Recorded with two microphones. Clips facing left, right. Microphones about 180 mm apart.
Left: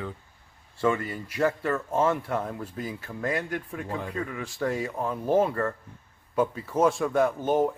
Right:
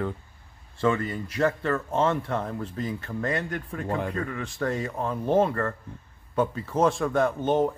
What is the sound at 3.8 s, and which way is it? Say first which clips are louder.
Speech: right 5 dB; 60° right (ahead or behind).